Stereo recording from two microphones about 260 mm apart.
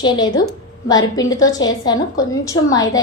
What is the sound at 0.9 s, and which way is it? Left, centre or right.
A woman's voice, centre.